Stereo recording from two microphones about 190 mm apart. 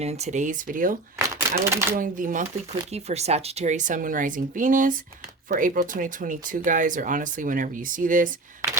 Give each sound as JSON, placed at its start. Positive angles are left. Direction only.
{"t": 0.0, "sound": "speech", "side_deg": -35}
{"t": 1.5, "sound": "speech", "side_deg": -15}
{"t": 2.0, "sound": "a woman's voice", "side_deg": -45}